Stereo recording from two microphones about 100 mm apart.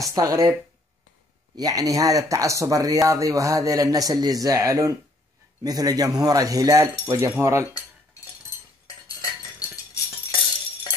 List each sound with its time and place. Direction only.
0.0 s speech: 35° right (ahead or behind)
1.6 s speech: 35° right (ahead or behind)
7.3 s cutlery: 25° right (ahead or behind)
8.8 s chink: 35° left (ahead or behind)